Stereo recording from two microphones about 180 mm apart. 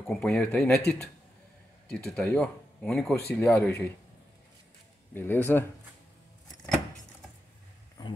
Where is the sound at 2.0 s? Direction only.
5° left (ahead or behind).